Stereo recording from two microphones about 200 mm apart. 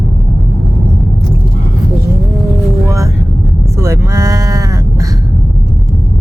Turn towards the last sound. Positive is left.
turn(degrees=-15)  # may be behind; listen again after turning